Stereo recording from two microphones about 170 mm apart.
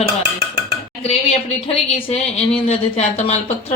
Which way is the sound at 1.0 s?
35° left (ahead or behind).